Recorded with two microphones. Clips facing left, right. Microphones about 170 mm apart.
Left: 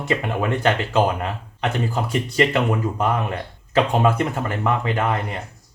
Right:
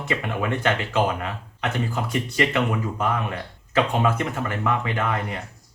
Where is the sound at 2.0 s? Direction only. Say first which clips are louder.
Left 5 dB; 30° left (ahead or behind).